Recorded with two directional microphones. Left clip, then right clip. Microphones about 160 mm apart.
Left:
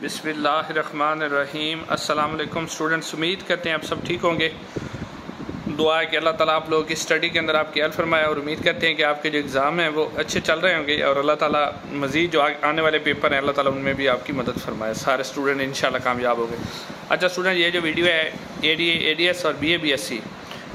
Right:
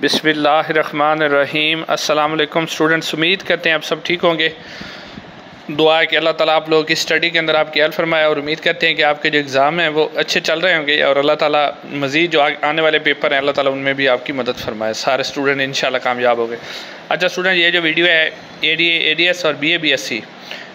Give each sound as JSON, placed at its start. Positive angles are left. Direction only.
{"t": 0.0, "sound": "a man's voice", "side_deg": -40}
{"t": 5.8, "sound": "a man's voice", "side_deg": -30}